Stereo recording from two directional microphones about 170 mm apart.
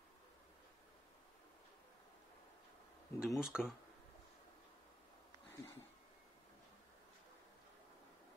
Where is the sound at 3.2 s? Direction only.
5° right (ahead or behind).